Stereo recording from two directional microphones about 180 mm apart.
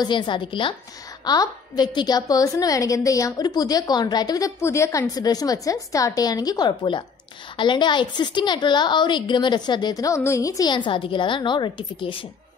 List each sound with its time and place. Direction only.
0.0 s a woman's voice: 25° left (ahead or behind)